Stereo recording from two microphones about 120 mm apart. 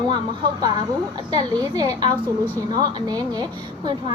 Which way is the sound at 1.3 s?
35° right (ahead or behind).